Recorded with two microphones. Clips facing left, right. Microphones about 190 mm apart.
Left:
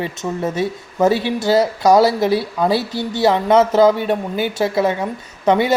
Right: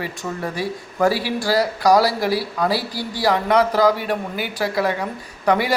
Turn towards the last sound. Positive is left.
turn(degrees=25)  # may be behind; listen again after turning